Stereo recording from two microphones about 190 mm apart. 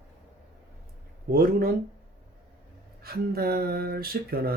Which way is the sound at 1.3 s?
50° right (ahead or behind).